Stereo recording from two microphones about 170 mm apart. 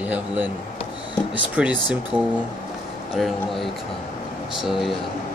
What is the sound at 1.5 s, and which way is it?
A man's voice, 10° right (ahead or behind).